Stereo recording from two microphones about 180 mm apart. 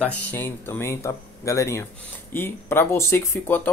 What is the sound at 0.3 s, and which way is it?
Speech, 10° left (ahead or behind).